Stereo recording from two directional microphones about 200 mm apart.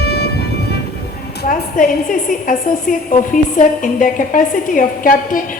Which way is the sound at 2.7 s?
40° left (ahead or behind).